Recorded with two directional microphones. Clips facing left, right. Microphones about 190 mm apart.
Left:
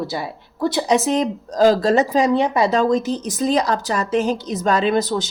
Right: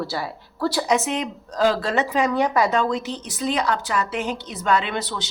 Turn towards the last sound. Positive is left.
turn(degrees=45)  # may be behind; listen again after turning